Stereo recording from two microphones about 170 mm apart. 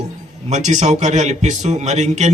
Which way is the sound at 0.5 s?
45° right (ahead or behind).